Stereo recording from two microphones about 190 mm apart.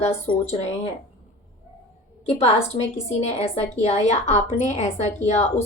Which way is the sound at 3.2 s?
35° left (ahead or behind).